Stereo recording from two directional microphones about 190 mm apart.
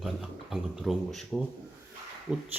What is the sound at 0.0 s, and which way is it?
A man's voice, centre (ahead or behind).